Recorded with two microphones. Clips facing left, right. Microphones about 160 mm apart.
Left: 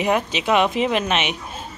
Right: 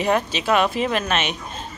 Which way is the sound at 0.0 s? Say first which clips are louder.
Even; 15° left (ahead or behind).